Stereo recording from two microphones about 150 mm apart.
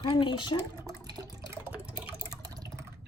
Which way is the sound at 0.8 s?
25° right (ahead or behind).